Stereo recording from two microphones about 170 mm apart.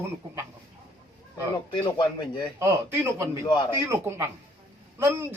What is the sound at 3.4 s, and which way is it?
Speech, 25° left (ahead or behind).